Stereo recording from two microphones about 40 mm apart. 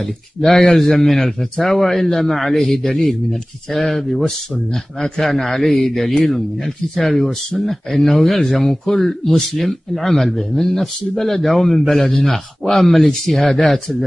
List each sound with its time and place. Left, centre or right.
0.0 s a man's voice: centre
2.8 s a man's voice: centre
3.1 s a man's voice: centre